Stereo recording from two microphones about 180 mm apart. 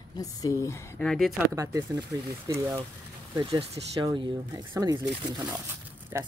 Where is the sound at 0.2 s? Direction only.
20° left (ahead or behind).